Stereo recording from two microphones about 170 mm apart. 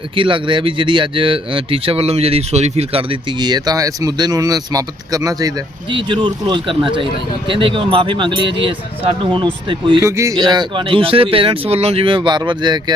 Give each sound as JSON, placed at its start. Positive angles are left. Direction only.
{"t": 0.2, "sound": "speech", "side_deg": -30}
{"t": 10.0, "sound": "speech", "side_deg": -20}